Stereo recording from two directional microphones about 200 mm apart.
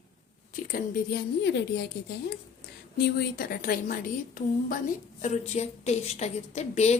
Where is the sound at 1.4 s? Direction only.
60° left (ahead or behind).